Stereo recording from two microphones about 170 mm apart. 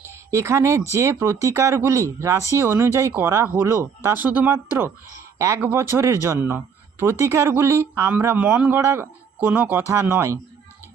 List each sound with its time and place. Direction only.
0.1 s speech: 15° right (ahead or behind)